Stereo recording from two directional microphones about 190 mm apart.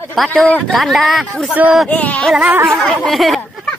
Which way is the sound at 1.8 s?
10° left (ahead or behind).